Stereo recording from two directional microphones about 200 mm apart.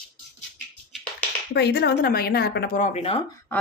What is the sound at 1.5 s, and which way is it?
Speech, 55° left (ahead or behind).